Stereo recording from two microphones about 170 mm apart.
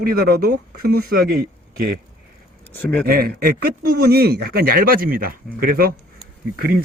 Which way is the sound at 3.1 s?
65° right (ahead or behind).